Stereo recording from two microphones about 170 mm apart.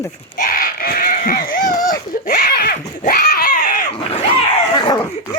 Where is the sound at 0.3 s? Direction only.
55° left (ahead or behind).